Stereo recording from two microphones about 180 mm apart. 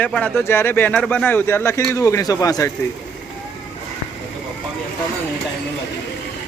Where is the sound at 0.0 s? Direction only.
5° left (ahead or behind).